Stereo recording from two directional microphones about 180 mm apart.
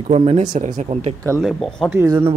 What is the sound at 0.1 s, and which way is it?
Speech, 35° right (ahead or behind).